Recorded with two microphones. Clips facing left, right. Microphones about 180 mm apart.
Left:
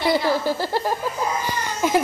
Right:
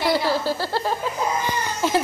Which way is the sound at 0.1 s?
15° left (ahead or behind).